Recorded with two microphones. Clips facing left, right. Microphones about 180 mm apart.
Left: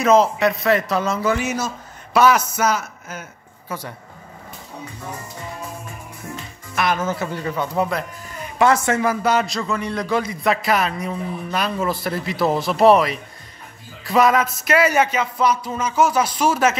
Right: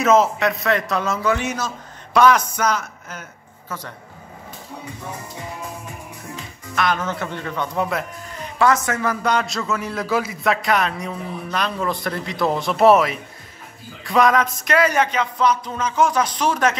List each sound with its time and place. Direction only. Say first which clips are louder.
0.0 s a man's voice: left 1 dB; centre (ahead or behind)
6.7 s speech: left 1 dB; 10° left (ahead or behind)
8.5 s speech: left 2 dB; 25° left (ahead or behind)
9.0 s a man's voice: left 2 dB; 5° left (ahead or behind)